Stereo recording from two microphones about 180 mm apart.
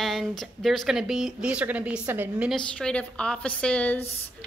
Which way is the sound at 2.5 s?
5° left (ahead or behind).